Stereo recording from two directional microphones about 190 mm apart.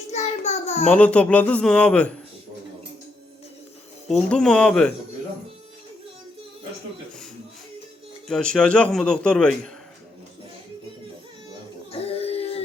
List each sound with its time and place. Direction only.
0.1 s a sound: 35° left (ahead or behind)
0.9 s speech: 5° left (ahead or behind)
4.1 s a man's voice: 5° left (ahead or behind)
8.3 s a man's voice: 5° left (ahead or behind)
11.9 s music: 30° left (ahead or behind)